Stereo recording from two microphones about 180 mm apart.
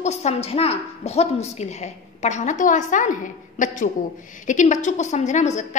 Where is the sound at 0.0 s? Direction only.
35° left (ahead or behind).